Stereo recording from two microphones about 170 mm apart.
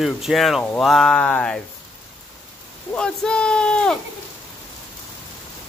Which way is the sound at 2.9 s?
5° left (ahead or behind).